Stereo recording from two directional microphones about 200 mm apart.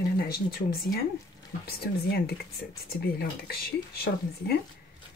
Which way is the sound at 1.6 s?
50° left (ahead or behind).